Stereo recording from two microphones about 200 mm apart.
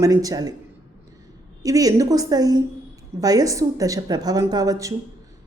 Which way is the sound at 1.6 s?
15° right (ahead or behind).